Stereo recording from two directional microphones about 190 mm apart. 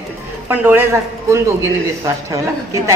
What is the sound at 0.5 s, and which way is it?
Speech, 10° right (ahead or behind).